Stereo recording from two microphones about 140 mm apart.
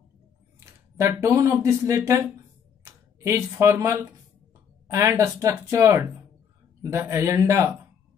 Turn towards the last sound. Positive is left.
turn(degrees=-20)  # may be behind; listen again after turning